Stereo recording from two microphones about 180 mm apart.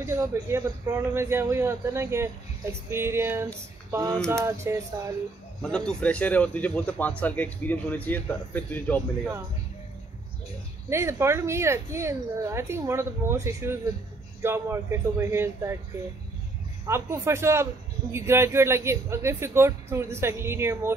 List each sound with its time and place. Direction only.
0.0 s speech: 15° right (ahead or behind)
3.9 s a sound: 20° right (ahead or behind)
4.3 s speech: 15° right (ahead or behind)
5.9 s speech: 5° left (ahead or behind)
10.9 s speech: 15° right (ahead or behind)
16.8 s speech: 15° right (ahead or behind)